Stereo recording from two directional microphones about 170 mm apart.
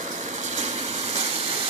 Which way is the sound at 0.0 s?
45° right (ahead or behind).